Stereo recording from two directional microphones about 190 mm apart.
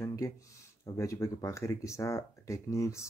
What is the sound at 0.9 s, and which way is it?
Speech, 15° left (ahead or behind).